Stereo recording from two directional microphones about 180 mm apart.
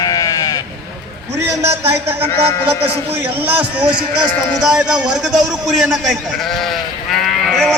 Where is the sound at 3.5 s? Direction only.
10° right (ahead or behind).